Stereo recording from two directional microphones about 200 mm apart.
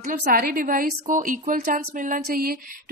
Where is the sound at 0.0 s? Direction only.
45° right (ahead or behind).